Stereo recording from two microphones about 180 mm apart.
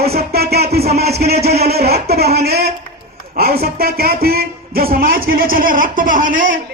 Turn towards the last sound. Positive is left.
turn(degrees=-50)  # may be behind; listen again after turning